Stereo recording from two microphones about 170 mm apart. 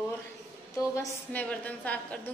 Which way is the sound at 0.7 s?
15° left (ahead or behind).